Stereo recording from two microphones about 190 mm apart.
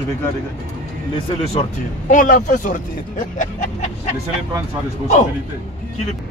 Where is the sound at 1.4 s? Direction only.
35° left (ahead or behind).